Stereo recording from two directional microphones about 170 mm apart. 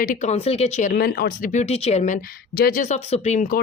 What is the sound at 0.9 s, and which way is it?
Speech, 65° left (ahead or behind).